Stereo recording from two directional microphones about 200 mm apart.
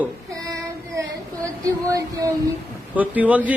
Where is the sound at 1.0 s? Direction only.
15° right (ahead or behind).